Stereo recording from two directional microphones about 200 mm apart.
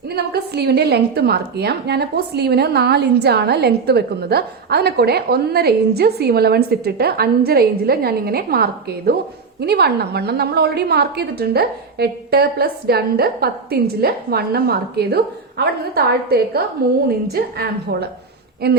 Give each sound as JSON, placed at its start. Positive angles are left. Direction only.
{"t": 0.2, "sound": "a woman's voice", "side_deg": -55}